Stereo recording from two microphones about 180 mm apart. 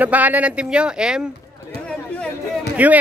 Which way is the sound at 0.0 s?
10° right (ahead or behind).